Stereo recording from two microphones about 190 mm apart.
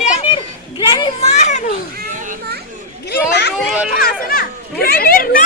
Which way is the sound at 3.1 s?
60° left (ahead or behind).